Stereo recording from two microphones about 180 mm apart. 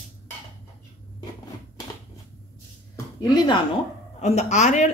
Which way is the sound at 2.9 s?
25° left (ahead or behind).